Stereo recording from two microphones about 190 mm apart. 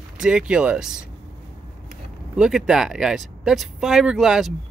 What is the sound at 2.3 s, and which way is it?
Speech, 5° right (ahead or behind).